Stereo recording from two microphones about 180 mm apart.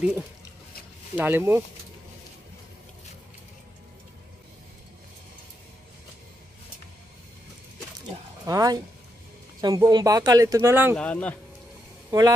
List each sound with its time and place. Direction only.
1.1 s speech: 10° right (ahead or behind)
8.5 s speech: 20° right (ahead or behind)
11.0 s speech: 5° left (ahead or behind)
12.1 s speech: 20° right (ahead or behind)